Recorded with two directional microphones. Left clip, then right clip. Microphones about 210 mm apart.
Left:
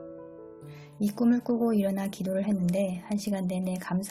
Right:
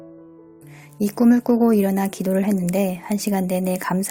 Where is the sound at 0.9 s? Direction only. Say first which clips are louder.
Right 9 dB; 35° right (ahead or behind).